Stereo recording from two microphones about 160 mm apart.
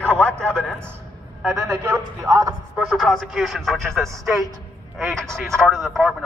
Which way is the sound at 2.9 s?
Centre (ahead or behind).